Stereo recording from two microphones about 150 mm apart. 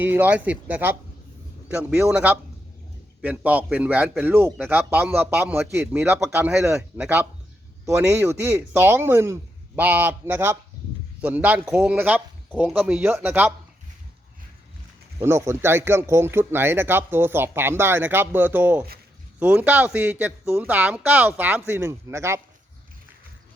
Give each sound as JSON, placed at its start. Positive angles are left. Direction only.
{"t": 0.0, "sound": "speech", "side_deg": -10}
{"t": 15.2, "sound": "speech", "side_deg": -20}